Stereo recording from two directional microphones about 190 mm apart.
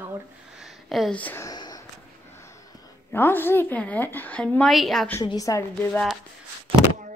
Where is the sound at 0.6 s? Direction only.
Centre (ahead or behind); by 1.9 s 20° left (ahead or behind).